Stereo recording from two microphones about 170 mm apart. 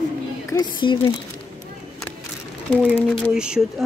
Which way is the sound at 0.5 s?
25° left (ahead or behind).